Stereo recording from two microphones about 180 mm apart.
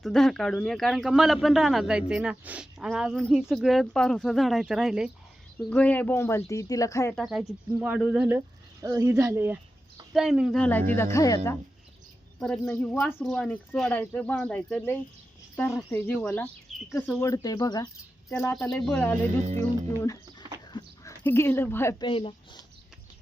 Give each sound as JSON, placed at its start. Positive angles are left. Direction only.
{"t": 0.0, "sound": "speech", "side_deg": 5}
{"t": 7.2, "sound": "speech", "side_deg": 0}
{"t": 8.4, "sound": "speech", "side_deg": -15}
{"t": 10.1, "sound": "speech", "side_deg": 0}
{"t": 12.4, "sound": "speech", "side_deg": 5}
{"t": 22.0, "sound": "speech", "side_deg": 30}